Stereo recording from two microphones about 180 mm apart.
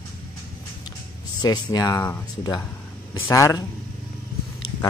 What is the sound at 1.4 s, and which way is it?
Speech, 20° left (ahead or behind).